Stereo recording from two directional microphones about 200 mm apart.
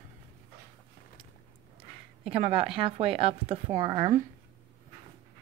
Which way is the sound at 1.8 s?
30° right (ahead or behind).